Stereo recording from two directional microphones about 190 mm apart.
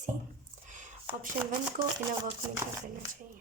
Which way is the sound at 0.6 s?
40° right (ahead or behind).